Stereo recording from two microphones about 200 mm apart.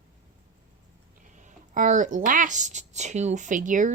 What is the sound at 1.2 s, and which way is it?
Speech, 40° right (ahead or behind).